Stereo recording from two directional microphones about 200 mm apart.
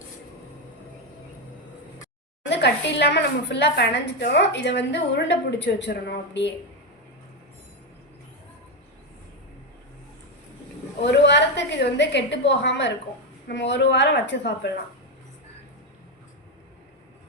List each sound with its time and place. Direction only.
2.5 s a woman's voice: 60° left (ahead or behind)
11.0 s a woman's voice: 60° left (ahead or behind)